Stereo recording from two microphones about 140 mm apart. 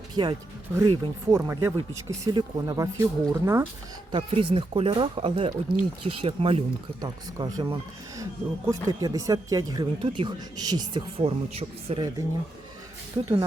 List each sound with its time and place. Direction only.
0.1 s speech: 35° right (ahead or behind)
0.8 s speech: 25° right (ahead or behind)
4.1 s speech: 40° right (ahead or behind)
7.3 s speech: 30° right (ahead or behind)
11.2 s speech: 40° right (ahead or behind)
13.2 s speech: 35° right (ahead or behind)